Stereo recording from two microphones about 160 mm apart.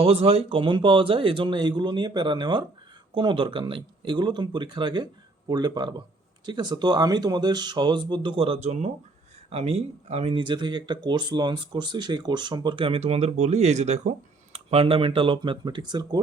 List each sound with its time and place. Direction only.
0.0 s speech: 35° right (ahead or behind)